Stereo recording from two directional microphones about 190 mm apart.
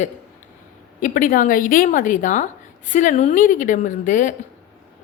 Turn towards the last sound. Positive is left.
turn(degrees=40)  # may be behind; listen again after turning